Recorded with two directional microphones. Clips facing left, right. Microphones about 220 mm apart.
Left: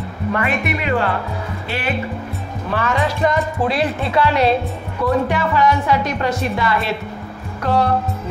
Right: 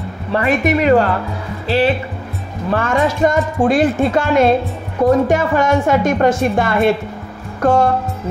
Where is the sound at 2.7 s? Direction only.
45° right (ahead or behind).